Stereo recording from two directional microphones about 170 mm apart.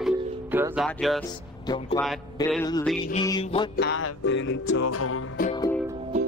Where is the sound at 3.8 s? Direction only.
90° left.